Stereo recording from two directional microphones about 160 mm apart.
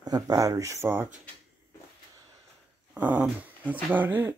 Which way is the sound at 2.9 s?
10° right (ahead or behind).